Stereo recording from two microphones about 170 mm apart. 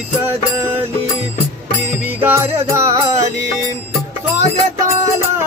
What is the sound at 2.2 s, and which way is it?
Music, 15° right (ahead or behind).